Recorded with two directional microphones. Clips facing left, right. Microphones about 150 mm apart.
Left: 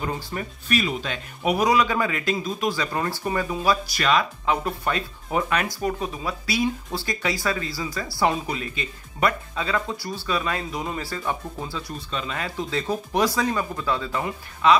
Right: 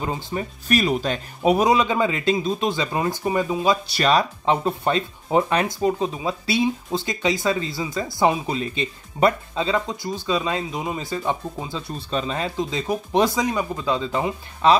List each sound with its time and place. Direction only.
0.0 s speech: 20° right (ahead or behind)
0.7 s speech: 40° right (ahead or behind); by 11.8 s 20° right (ahead or behind)
12.1 s speech: 35° right (ahead or behind)
14.6 s speech: 35° right (ahead or behind)